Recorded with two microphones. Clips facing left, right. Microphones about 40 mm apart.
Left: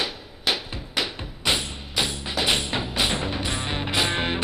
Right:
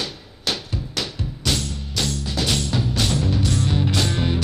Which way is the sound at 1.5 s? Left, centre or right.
Left.